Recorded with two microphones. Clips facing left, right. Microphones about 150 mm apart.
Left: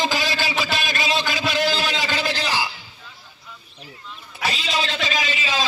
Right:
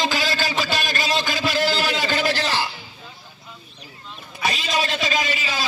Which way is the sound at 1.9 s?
50° right (ahead or behind).